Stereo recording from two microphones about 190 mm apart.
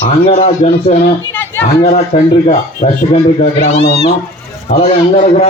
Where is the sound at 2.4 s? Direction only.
35° left (ahead or behind).